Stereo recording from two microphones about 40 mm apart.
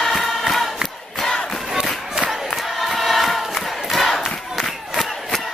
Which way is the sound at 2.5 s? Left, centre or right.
Centre.